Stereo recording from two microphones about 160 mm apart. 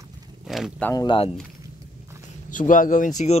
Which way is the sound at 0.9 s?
25° left (ahead or behind).